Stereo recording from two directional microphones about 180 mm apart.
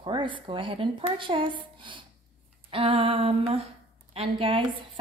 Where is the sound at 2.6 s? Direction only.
30° right (ahead or behind).